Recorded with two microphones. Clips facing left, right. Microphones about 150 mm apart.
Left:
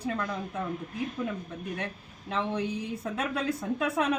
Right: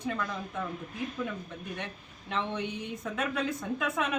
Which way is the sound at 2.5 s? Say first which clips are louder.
Left 4 dB; 35° left (ahead or behind).